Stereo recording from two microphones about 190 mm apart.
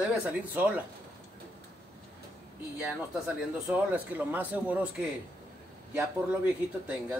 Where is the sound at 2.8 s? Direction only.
5° right (ahead or behind).